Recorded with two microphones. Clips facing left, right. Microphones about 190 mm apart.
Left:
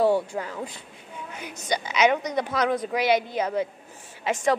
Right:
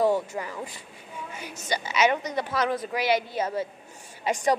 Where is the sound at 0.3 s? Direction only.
Centre (ahead or behind).